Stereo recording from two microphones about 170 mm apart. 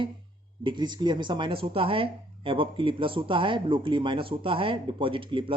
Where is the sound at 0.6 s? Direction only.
25° right (ahead or behind).